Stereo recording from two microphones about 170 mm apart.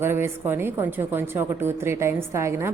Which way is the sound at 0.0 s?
15° right (ahead or behind).